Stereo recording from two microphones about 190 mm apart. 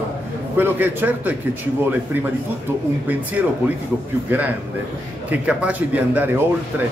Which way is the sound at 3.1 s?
10° right (ahead or behind).